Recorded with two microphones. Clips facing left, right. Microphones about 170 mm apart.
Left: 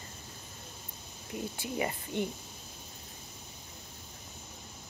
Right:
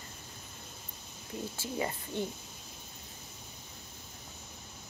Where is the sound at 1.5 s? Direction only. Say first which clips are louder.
Left 1 dB; 15° left (ahead or behind).